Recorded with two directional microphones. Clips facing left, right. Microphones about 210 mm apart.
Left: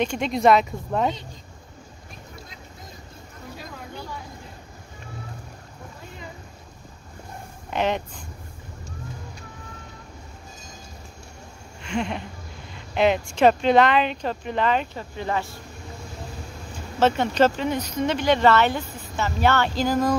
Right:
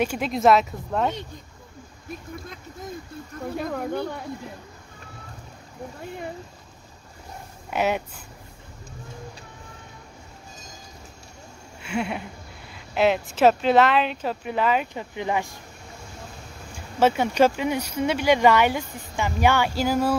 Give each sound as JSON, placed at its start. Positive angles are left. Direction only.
{"t": 0.0, "sound": "speech", "side_deg": -5}
{"t": 3.5, "sound": "a sound", "side_deg": -60}
{"t": 7.7, "sound": "speech", "side_deg": -10}
{"t": 11.8, "sound": "a sound", "side_deg": -5}
{"t": 12.7, "sound": "speech", "side_deg": -5}
{"t": 17.0, "sound": "speech", "side_deg": -10}